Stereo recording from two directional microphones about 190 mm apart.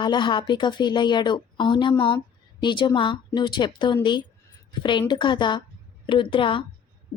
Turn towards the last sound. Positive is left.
turn(degrees=25)  # may be behind; listen again after turning